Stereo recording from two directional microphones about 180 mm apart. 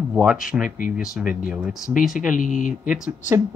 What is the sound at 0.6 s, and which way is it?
Speech, 50° left (ahead or behind).